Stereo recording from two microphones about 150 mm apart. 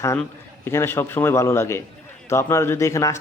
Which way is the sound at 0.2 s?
15° left (ahead or behind).